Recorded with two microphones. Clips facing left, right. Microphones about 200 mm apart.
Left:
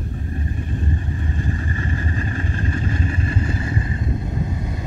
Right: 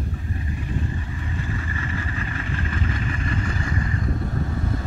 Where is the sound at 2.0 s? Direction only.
35° left (ahead or behind).